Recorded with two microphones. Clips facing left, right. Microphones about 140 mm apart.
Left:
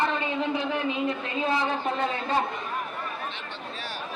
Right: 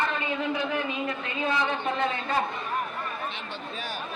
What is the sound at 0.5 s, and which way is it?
Speech, 30° left (ahead or behind).